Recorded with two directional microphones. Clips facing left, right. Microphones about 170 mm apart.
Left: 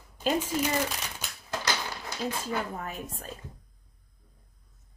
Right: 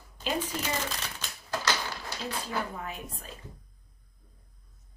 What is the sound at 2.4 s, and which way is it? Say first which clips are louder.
Speech: left 2 dB; 45° left (ahead or behind).